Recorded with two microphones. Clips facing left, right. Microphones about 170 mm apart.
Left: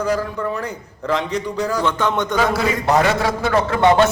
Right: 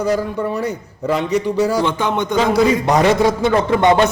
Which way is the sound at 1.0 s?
10° right (ahead or behind).